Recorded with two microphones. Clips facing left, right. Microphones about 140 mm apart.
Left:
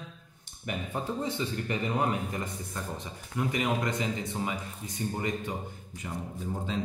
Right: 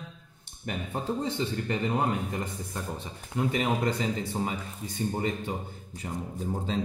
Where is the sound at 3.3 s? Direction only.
30° right (ahead or behind).